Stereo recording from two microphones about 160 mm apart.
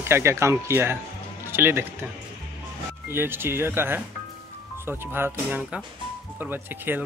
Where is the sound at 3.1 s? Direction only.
15° right (ahead or behind).